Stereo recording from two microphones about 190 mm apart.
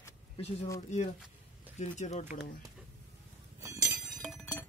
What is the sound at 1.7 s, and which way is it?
Speech, 40° left (ahead or behind).